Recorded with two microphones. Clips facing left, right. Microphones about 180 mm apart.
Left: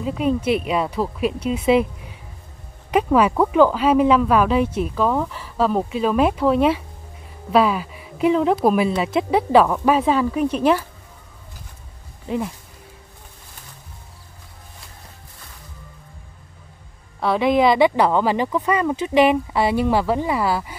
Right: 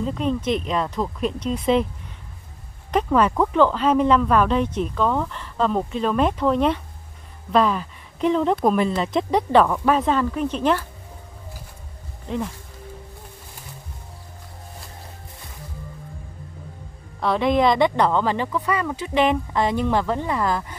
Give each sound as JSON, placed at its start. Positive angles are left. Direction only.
{"t": 0.0, "sound": "speech", "side_deg": 10}
{"t": 2.9, "sound": "speech", "side_deg": 10}
{"t": 17.2, "sound": "speech", "side_deg": 5}